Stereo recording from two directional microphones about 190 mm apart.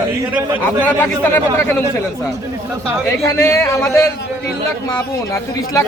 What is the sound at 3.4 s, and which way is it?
Speech, 15° left (ahead or behind).